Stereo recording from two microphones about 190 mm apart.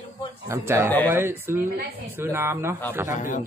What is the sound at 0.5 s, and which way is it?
Speech, 15° right (ahead or behind).